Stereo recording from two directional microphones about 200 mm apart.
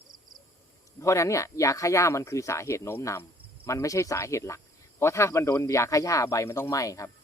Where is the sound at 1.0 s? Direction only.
15° left (ahead or behind).